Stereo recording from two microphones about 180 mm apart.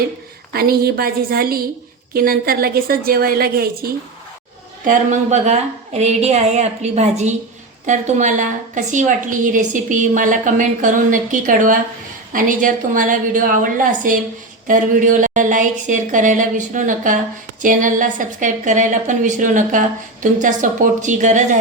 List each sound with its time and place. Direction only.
0.5 s a woman's voice: 55° right (ahead or behind)
4.9 s a woman's voice: 40° right (ahead or behind)